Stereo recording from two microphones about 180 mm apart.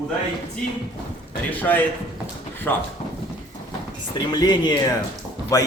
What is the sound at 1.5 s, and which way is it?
A man's voice, 10° left (ahead or behind).